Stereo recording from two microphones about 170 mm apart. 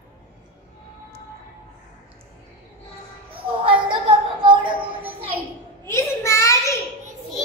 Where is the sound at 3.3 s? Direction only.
30° right (ahead or behind).